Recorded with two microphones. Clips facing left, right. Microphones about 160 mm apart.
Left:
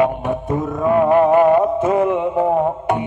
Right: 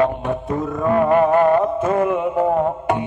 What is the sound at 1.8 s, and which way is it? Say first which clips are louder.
Mantra: left 2 dB; 20° left (ahead or behind).